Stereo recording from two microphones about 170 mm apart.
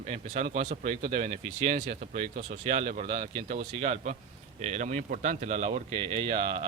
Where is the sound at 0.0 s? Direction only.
40° right (ahead or behind).